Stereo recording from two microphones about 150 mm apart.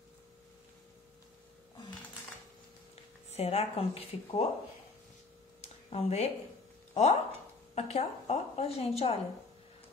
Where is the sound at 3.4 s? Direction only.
45° left (ahead or behind).